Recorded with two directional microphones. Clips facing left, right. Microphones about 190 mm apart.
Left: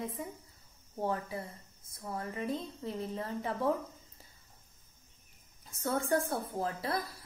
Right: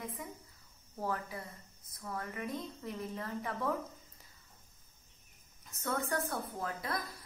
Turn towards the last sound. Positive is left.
turn(degrees=30)  # may be behind; listen again after turning